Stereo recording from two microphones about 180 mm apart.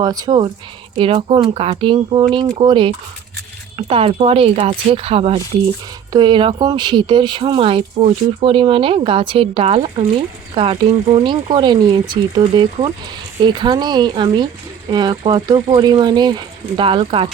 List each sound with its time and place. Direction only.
0.0 s speech: 20° right (ahead or behind)